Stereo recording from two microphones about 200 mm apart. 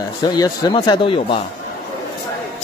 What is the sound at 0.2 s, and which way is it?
Speech, 20° left (ahead or behind).